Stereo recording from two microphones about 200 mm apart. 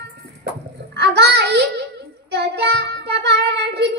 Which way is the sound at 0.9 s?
60° right (ahead or behind).